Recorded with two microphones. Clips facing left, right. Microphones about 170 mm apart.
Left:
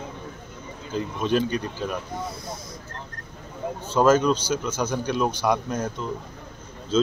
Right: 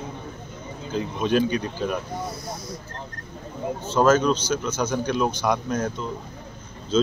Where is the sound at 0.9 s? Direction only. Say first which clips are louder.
Right 1 dB; centre (ahead or behind).